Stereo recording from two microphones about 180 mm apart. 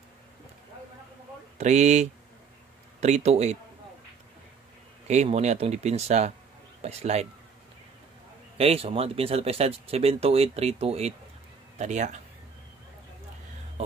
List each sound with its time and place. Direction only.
1.6 s speech: 40° right (ahead or behind)
5.0 s speech: 40° right (ahead or behind)
8.5 s speech: 35° right (ahead or behind)